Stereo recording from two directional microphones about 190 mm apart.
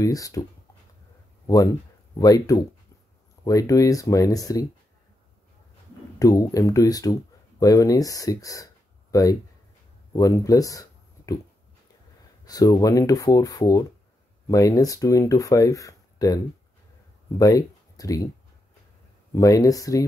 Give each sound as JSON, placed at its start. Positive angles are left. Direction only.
{"t": 0.0, "sound": "speech", "side_deg": 20}
{"t": 1.5, "sound": "speech", "side_deg": 15}
{"t": 6.1, "sound": "speech", "side_deg": 15}
{"t": 12.4, "sound": "speech", "side_deg": 20}
{"t": 17.4, "sound": "speech", "side_deg": 20}
{"t": 19.3, "sound": "speech", "side_deg": 15}